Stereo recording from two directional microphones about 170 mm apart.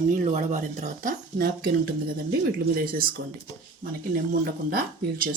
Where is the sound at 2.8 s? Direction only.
55° right (ahead or behind).